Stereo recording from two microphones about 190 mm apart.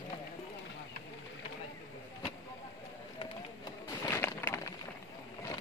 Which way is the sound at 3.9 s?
15° left (ahead or behind).